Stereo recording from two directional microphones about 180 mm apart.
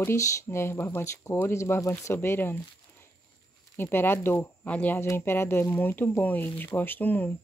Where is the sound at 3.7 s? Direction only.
10° left (ahead or behind).